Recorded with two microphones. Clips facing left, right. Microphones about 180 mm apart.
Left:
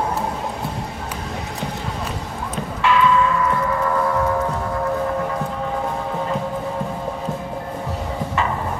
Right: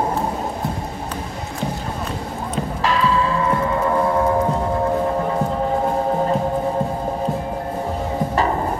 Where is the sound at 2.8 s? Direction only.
35° right (ahead or behind).